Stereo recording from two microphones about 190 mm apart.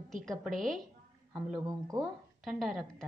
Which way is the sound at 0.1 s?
Centre (ahead or behind).